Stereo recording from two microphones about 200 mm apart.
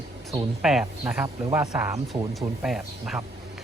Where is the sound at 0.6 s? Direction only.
5° right (ahead or behind).